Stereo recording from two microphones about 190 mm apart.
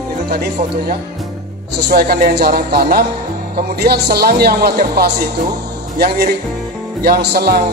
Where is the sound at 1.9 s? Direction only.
50° right (ahead or behind).